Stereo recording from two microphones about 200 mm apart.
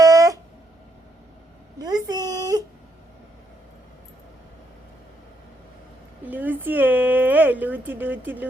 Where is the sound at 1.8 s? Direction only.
20° right (ahead or behind).